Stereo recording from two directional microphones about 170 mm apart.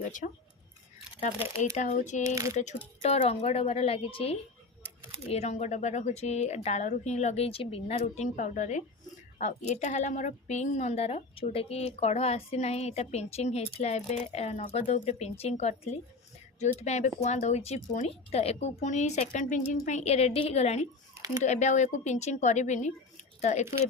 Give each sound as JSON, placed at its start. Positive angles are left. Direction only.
{"t": 0.0, "sound": "speech", "side_deg": 50}
{"t": 1.2, "sound": "a woman's voice", "side_deg": 35}
{"t": 2.2, "sound": "speech", "side_deg": -20}
{"t": 2.6, "sound": "a woman's voice", "side_deg": 40}